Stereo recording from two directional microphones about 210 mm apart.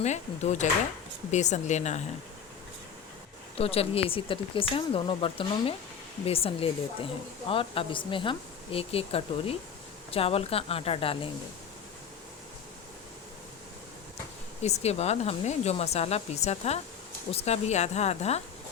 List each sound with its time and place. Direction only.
0.0 s speech: 35° left (ahead or behind)
3.6 s a woman's voice: 30° left (ahead or behind)
14.6 s speech: 30° left (ahead or behind)